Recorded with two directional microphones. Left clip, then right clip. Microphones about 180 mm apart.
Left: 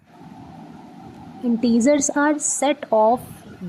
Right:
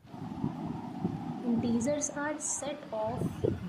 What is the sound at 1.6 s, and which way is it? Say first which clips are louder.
A woman's voice: left 16 dB; 50° left (ahead or behind).